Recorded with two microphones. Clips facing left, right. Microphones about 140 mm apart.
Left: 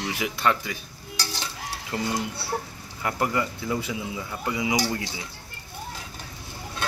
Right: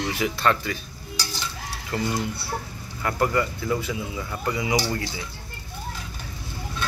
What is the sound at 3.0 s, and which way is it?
Speech, 15° left (ahead or behind).